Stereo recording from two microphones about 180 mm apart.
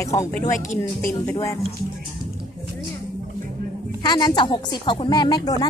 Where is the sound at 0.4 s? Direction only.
45° left (ahead or behind).